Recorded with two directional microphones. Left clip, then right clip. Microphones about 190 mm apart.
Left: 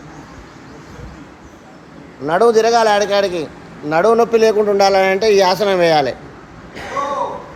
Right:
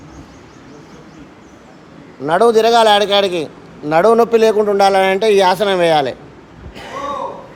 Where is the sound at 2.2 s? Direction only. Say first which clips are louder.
Right 1 dB; 40° right (ahead or behind); by 6.1 s 20° right (ahead or behind).